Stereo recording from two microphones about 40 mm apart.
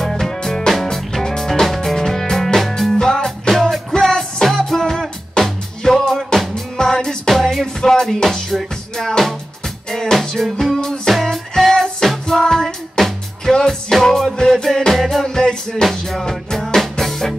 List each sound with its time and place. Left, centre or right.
0.0 s music: centre
7.2 s music: centre
10.1 s music: centre
13.9 s music: centre
15.2 s music: centre